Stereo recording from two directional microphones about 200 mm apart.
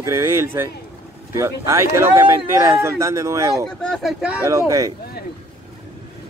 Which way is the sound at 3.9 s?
5° right (ahead or behind).